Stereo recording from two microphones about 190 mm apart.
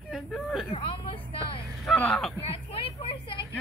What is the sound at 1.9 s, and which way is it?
Speech, 5° left (ahead or behind).